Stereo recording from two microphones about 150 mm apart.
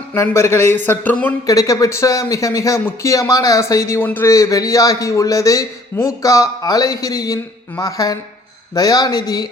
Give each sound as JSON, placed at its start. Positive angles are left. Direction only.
{"t": 0.1, "sound": "speech", "side_deg": 15}
{"t": 1.5, "sound": "speech", "side_deg": 20}